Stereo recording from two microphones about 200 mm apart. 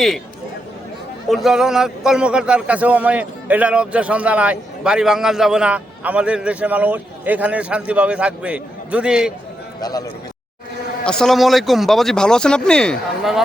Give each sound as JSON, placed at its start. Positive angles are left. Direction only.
{"t": 1.3, "sound": "a man's voice", "side_deg": 0}
{"t": 9.8, "sound": "a man's voice", "side_deg": 20}
{"t": 11.0, "sound": "a man's voice", "side_deg": 5}